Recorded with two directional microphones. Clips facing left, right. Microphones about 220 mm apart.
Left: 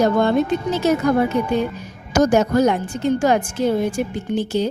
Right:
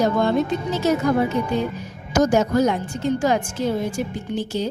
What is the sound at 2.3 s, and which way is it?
A woman's voice, 65° left (ahead or behind).